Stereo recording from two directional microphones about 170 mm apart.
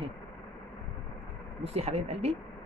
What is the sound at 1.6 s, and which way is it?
Speech, 40° right (ahead or behind).